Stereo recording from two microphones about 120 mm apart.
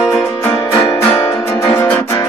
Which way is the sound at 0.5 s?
35° left (ahead or behind).